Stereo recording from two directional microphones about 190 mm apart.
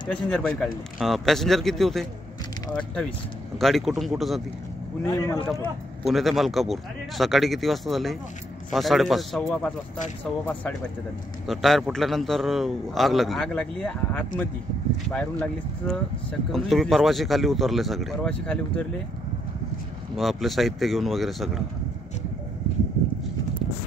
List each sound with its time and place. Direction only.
0.1 s speech: 5° left (ahead or behind)
5.0 s a man's voice: 15° left (ahead or behind)
6.0 s a man's voice: centre (ahead or behind)
20.2 s speech: centre (ahead or behind)